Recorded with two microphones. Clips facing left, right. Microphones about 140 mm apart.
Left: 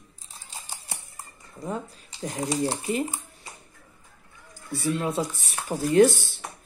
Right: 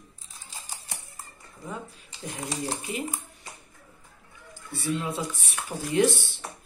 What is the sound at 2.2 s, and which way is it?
Speech, 35° left (ahead or behind).